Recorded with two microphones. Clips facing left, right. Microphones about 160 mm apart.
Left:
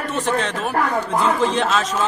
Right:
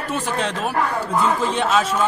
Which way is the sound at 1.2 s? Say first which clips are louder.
Left 2 dB; 10° right (ahead or behind).